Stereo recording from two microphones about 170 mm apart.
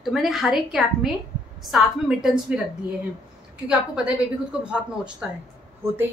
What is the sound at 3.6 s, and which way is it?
Speech, 5° right (ahead or behind).